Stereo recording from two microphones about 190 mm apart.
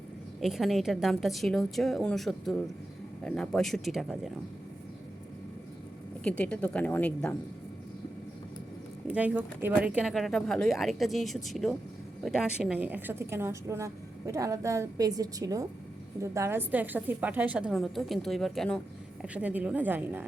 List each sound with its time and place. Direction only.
0.3 s speech: centre (ahead or behind)
6.2 s a woman's voice: 5° left (ahead or behind)
9.0 s a woman's voice: 5° right (ahead or behind)